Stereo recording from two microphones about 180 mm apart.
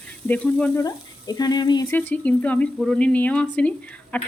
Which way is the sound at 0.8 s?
20° left (ahead or behind).